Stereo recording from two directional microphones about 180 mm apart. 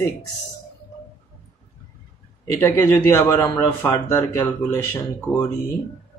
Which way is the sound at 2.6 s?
15° left (ahead or behind).